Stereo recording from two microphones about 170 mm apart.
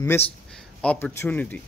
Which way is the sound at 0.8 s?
10° left (ahead or behind).